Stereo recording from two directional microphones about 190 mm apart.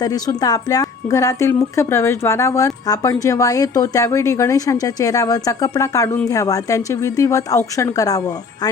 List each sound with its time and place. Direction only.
0.0 s speech: 20° left (ahead or behind)